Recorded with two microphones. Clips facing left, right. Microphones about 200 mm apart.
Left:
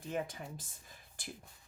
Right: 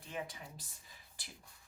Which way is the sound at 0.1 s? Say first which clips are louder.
Left 5 dB; 45° left (ahead or behind).